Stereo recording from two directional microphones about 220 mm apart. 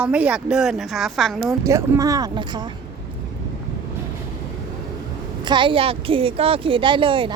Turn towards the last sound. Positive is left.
turn(degrees=-25)  # may be behind; listen again after turning